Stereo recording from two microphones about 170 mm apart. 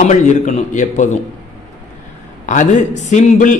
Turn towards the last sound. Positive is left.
turn(degrees=45)  # may be behind; listen again after turning